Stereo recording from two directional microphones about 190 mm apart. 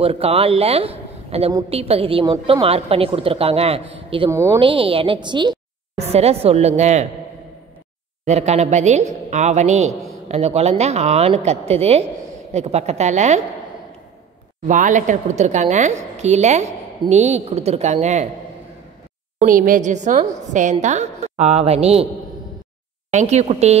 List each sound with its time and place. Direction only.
0.0 s a man's voice: 30° right (ahead or behind)
4.3 s speech: 15° right (ahead or behind)
4.6 s a woman's voice: 25° right (ahead or behind)
8.3 s speech: 35° right (ahead or behind)
14.7 s speech: 40° right (ahead or behind)
19.3 s speech: 45° right (ahead or behind)
23.1 s speech: 35° right (ahead or behind)